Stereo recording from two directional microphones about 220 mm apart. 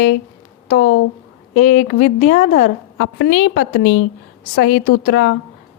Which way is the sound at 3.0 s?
55° left (ahead or behind).